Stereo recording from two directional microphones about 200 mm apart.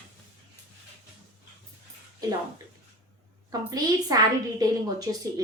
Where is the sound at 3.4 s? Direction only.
20° right (ahead or behind).